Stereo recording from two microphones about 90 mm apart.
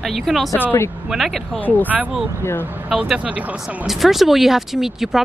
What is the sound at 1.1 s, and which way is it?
Speech, centre (ahead or behind).